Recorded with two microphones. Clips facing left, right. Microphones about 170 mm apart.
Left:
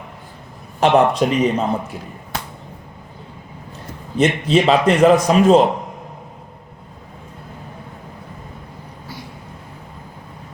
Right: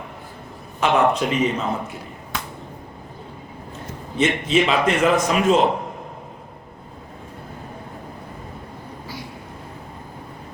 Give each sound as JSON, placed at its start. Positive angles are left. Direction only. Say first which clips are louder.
{"t": 0.8, "sound": "a man's voice", "louder": "left 4 dB", "side_deg": 35}
{"t": 4.2, "sound": "a man's voice", "louder": "left 3 dB", "side_deg": 40}